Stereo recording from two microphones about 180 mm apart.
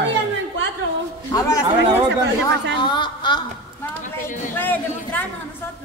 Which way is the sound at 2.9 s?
25° left (ahead or behind).